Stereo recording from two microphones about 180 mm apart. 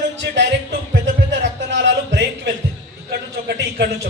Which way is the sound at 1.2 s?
80° right.